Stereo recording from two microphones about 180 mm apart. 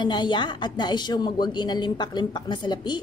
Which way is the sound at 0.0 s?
25° left (ahead or behind).